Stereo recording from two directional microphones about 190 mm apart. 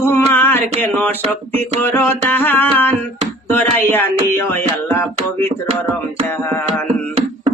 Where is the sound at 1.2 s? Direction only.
30° right (ahead or behind).